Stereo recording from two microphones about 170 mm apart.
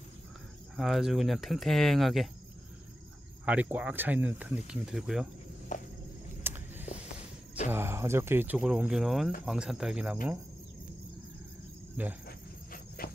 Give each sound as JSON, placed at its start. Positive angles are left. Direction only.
{"t": 0.7, "sound": "speech", "side_deg": 0}
{"t": 3.4, "sound": "speech", "side_deg": -10}
{"t": 5.7, "sound": "cricket", "side_deg": 45}
{"t": 6.4, "sound": "vehicle", "side_deg": -10}
{"t": 7.7, "sound": "speech", "side_deg": -15}
{"t": 12.3, "sound": "cricket", "side_deg": 60}